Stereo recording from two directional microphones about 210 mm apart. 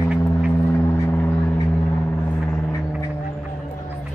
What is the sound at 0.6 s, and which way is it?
Vehicle, 10° left (ahead or behind).